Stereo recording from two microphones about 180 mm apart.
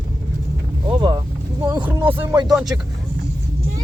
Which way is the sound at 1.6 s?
15° right (ahead or behind).